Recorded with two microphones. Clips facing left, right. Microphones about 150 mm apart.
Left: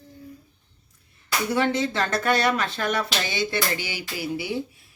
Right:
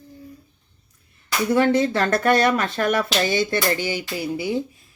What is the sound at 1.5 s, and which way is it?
Speech, 50° right (ahead or behind).